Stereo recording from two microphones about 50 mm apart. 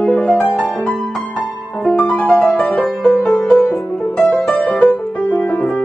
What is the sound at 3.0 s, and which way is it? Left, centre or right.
Music, centre.